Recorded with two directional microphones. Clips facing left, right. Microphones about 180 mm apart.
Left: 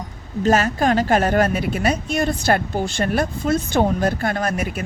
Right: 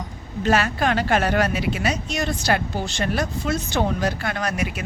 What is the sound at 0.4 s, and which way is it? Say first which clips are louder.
A woman's voice: left 3 dB; 40° left (ahead or behind).